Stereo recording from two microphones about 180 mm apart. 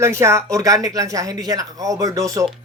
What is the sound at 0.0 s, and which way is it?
Speech, 15° right (ahead or behind).